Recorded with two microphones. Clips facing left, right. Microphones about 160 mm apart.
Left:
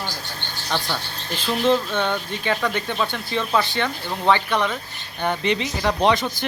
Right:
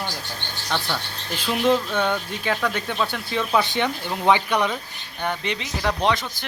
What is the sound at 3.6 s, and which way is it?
Speech, 15° right (ahead or behind).